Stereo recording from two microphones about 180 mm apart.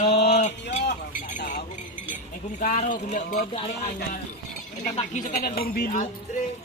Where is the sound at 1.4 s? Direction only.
60° left (ahead or behind).